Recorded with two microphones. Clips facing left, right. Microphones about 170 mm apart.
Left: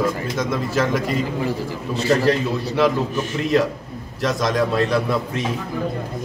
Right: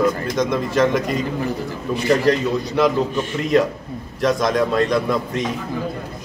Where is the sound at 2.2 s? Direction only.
5° left (ahead or behind).